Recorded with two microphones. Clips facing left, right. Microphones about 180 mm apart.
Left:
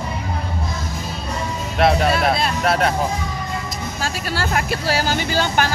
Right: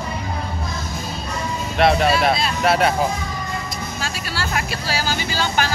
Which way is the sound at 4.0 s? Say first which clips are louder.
Left 5 dB; 50° left (ahead or behind).